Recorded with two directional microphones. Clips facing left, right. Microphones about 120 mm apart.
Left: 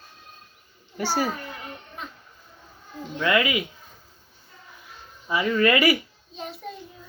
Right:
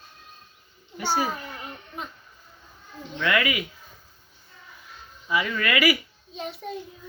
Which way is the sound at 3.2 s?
25° left (ahead or behind).